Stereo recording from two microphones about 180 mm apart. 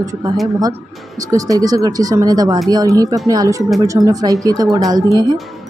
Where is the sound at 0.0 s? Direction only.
20° right (ahead or behind).